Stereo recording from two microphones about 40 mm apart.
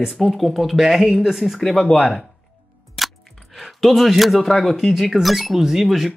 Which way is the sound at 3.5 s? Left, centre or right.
Centre.